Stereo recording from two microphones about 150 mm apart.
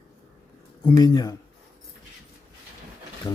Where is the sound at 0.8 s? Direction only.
30° left (ahead or behind).